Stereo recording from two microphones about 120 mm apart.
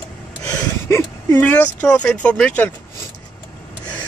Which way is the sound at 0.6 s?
20° left (ahead or behind).